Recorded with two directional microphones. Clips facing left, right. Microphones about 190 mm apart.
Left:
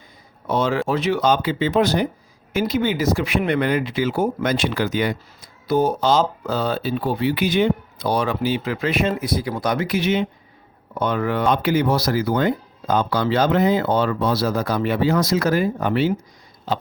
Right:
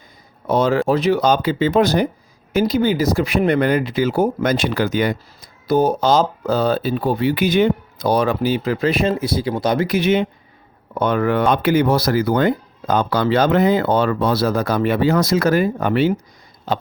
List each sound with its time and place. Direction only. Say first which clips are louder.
0.4 s speech: right 4 dB; 40° right (ahead or behind)
9.8 s speech: right 4 dB; 50° right (ahead or behind)